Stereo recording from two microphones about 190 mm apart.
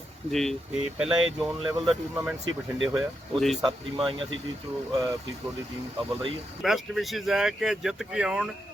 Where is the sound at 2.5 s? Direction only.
90° right.